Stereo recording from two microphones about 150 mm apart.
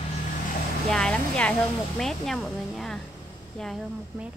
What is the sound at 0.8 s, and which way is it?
A woman's voice, 5° left (ahead or behind).